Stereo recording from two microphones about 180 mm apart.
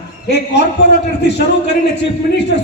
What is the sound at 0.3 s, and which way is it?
A man's voice, 70° left (ahead or behind).